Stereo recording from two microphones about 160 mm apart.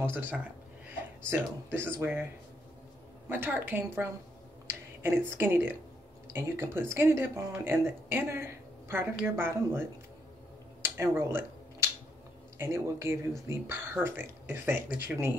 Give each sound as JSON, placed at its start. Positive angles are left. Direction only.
{"t": 0.0, "sound": "speech", "side_deg": -10}
{"t": 1.7, "sound": "speech", "side_deg": -15}
{"t": 3.3, "sound": "speech", "side_deg": -10}
{"t": 10.8, "sound": "a sound", "side_deg": -15}
{"t": 12.5, "sound": "speech", "side_deg": -15}